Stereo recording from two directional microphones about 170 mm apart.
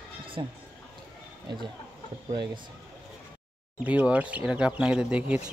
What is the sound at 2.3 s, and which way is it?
Speech, 25° right (ahead or behind).